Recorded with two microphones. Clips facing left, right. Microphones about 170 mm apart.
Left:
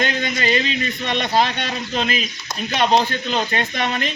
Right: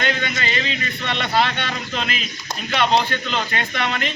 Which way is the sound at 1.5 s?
40° left (ahead or behind).